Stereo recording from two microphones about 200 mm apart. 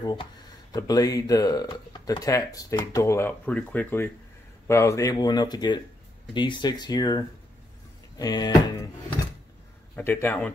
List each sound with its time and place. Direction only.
0.0 s speech: 20° left (ahead or behind)
9.9 s speech: 10° left (ahead or behind)